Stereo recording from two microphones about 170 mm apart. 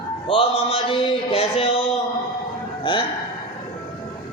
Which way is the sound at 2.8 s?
30° left (ahead or behind).